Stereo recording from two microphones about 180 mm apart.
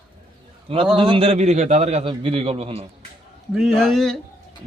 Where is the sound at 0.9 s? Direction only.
30° right (ahead or behind).